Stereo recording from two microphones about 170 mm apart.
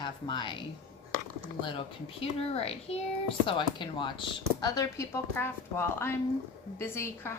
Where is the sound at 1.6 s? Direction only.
30° left (ahead or behind).